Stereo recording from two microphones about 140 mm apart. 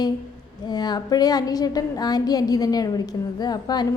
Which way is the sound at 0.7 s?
30° left (ahead or behind).